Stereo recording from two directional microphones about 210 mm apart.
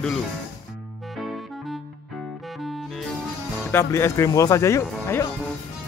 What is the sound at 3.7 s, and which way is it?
Speech, 15° left (ahead or behind).